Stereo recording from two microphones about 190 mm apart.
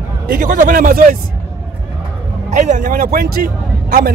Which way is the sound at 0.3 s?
45° right (ahead or behind).